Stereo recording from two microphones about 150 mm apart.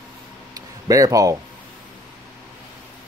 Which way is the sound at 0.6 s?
25° right (ahead or behind).